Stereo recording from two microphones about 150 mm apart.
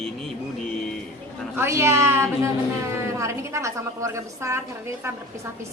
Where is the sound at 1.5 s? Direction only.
20° right (ahead or behind).